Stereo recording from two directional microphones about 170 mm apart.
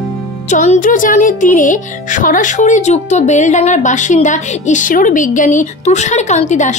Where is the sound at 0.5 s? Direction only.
45° left (ahead or behind).